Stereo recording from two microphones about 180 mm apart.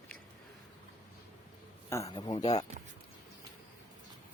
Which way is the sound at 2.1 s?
25° left (ahead or behind).